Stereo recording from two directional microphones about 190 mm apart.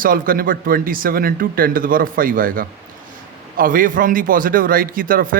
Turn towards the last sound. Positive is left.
turn(degrees=-45)  # may be behind; listen again after turning